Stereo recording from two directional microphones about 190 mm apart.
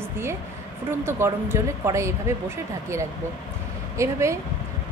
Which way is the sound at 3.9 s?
15° right (ahead or behind).